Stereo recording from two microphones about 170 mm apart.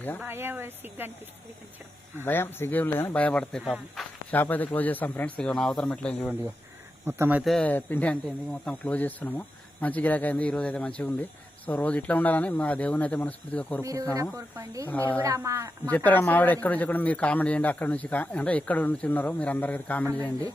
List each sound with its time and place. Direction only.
0.2 s speech: 10° right (ahead or behind)
2.2 s a man's voice: 15° left (ahead or behind)
7.0 s speech: 10° right (ahead or behind)
7.5 s a man's voice: 10° left (ahead or behind)
13.8 s speech: 20° right (ahead or behind)
16.0 s a man's voice: 10° left (ahead or behind)